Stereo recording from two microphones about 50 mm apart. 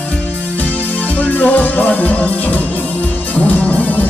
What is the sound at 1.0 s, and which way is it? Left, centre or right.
Music, left.